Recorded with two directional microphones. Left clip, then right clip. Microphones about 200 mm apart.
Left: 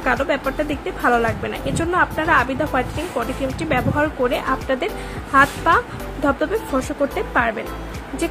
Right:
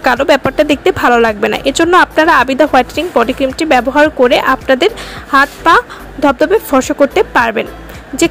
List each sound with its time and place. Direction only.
0.0 s a woman's voice: 45° right (ahead or behind)